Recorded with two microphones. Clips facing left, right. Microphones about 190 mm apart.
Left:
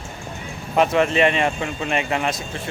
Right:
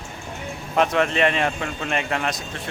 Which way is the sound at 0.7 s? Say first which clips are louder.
Left 3 dB; 5° left (ahead or behind).